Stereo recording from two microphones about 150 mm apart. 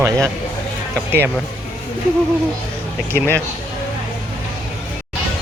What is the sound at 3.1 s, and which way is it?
Speech, 15° left (ahead or behind).